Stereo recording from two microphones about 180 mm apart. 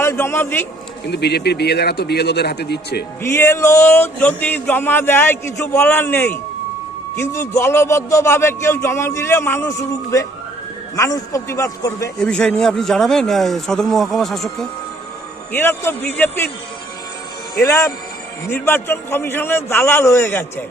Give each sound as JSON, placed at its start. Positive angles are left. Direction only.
{"t": 0.0, "sound": "a man's voice", "side_deg": 15}
{"t": 1.0, "sound": "a man's voice", "side_deg": 65}
{"t": 3.2, "sound": "speech", "side_deg": 15}
{"t": 12.2, "sound": "a man's voice", "side_deg": 5}
{"t": 15.5, "sound": "speech", "side_deg": 10}
{"t": 17.6, "sound": "speech", "side_deg": 15}